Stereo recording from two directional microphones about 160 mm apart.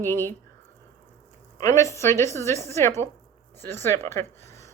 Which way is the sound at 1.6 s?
20° left (ahead or behind).